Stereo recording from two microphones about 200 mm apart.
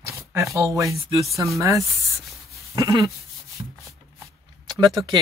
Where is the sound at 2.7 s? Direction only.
20° right (ahead or behind).